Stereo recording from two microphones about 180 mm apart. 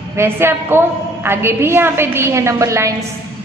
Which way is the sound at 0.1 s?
15° right (ahead or behind).